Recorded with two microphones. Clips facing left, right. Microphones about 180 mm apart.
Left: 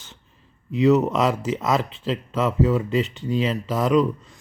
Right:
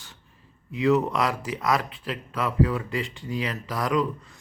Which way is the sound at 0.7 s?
20° left (ahead or behind).